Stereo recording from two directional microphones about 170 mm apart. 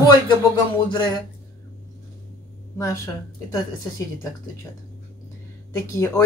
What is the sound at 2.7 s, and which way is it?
Speech, 15° left (ahead or behind).